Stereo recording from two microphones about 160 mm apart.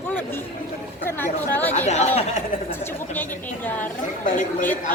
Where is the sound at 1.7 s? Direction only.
45° left (ahead or behind).